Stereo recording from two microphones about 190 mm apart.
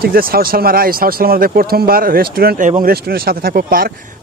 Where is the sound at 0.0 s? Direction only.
50° right (ahead or behind).